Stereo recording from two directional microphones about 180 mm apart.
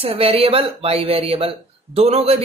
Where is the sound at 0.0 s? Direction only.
35° right (ahead or behind).